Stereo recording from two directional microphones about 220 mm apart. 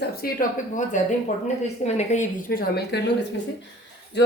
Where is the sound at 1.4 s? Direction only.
30° left (ahead or behind).